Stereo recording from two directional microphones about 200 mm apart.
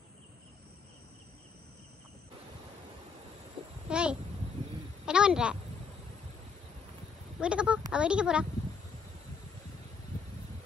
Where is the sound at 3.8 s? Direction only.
5° right (ahead or behind).